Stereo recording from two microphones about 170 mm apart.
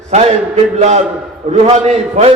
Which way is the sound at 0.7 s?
40° right (ahead or behind).